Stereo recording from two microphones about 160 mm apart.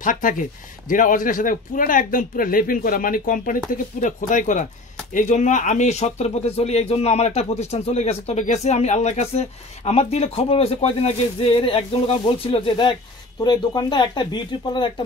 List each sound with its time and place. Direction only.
0.0 s speech: 55° left (ahead or behind); by 14.9 s 30° left (ahead or behind)